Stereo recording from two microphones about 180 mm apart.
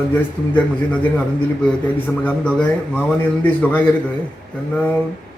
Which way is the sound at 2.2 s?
10° left (ahead or behind).